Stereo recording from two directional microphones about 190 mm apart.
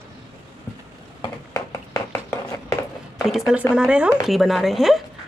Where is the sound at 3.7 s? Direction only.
5° right (ahead or behind).